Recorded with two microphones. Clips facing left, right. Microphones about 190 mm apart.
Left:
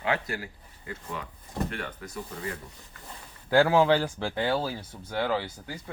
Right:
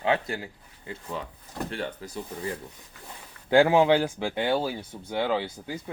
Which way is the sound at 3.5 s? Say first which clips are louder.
Right 2 dB; 20° right (ahead or behind).